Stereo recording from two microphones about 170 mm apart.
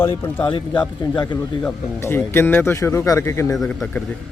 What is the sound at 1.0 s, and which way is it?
Speech, 25° left (ahead or behind).